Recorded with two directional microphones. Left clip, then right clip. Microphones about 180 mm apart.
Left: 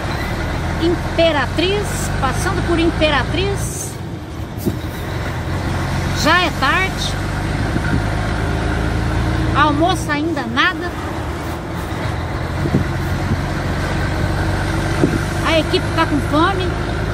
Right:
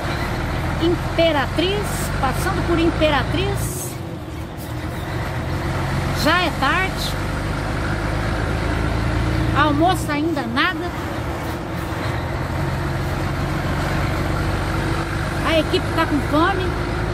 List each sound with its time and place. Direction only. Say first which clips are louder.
1.1 s speech: left 3 dB; centre (ahead or behind)
2.8 s speech: left 2 dB; centre (ahead or behind)
6.2 s speech: left 4 dB; centre (ahead or behind)
9.6 s speech: left 2 dB; 5° right (ahead or behind)
15.4 s speech: left 2 dB; centre (ahead or behind)